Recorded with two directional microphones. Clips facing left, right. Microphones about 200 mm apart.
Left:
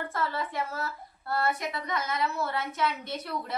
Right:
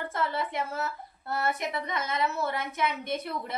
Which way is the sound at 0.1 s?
20° right (ahead or behind).